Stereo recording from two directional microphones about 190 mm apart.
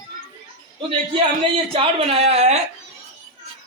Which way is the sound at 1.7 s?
30° right (ahead or behind).